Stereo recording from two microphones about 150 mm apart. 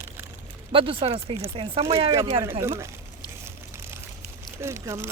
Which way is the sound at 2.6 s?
20° right (ahead or behind).